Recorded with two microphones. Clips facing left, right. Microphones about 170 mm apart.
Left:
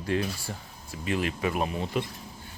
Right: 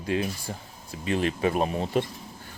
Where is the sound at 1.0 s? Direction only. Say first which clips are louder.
Right 3 dB; 35° right (ahead or behind).